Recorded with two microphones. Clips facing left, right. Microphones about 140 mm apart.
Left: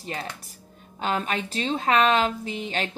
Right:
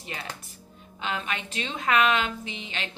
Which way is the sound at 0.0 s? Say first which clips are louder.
Left 4 dB; 35° left (ahead or behind).